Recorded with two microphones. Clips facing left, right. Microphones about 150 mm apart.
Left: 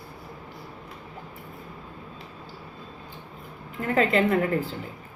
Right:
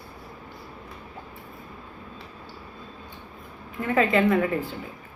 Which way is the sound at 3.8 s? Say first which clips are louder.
Right 1 dB; 30° left (ahead or behind).